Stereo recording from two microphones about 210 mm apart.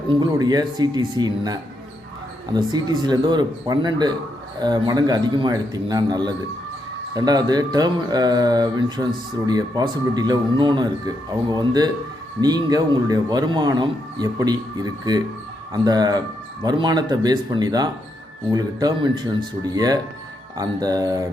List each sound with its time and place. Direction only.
0.2 s speech: 20° right (ahead or behind)
20.6 s music: 15° right (ahead or behind)